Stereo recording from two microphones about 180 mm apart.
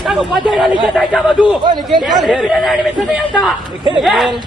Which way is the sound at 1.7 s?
25° right (ahead or behind).